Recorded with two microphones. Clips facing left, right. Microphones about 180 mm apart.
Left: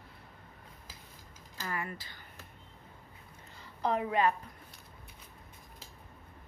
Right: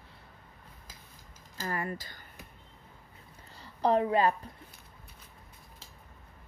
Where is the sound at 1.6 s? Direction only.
40° right (ahead or behind).